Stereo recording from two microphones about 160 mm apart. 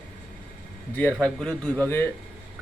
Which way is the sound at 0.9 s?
10° left (ahead or behind).